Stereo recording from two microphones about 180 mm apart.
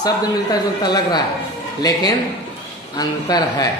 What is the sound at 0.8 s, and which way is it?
Speech, 25° left (ahead or behind).